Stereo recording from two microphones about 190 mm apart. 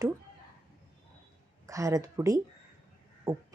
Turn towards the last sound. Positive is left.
turn(degrees=-20)  # may be behind; listen again after turning